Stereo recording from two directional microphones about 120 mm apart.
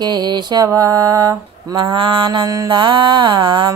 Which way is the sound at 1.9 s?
50° right (ahead or behind).